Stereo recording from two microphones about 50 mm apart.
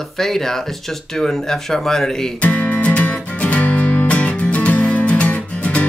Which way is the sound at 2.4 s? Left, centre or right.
Left.